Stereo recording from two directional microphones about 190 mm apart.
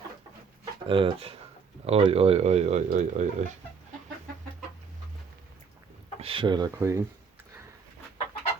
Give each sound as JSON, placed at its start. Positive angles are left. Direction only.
{"t": 0.9, "sound": "speech", "side_deg": -25}
{"t": 6.1, "sound": "speech", "side_deg": -30}